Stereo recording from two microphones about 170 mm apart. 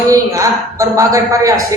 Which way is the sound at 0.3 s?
20° right (ahead or behind).